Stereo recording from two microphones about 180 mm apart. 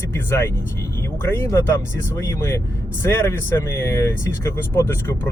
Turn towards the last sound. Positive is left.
turn(degrees=10)  # may be behind; listen again after turning